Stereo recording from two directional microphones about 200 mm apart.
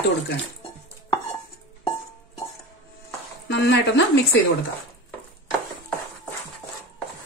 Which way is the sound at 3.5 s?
60° left (ahead or behind).